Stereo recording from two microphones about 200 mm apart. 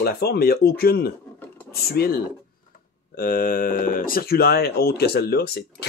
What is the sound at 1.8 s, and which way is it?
Speech, 50° left (ahead or behind).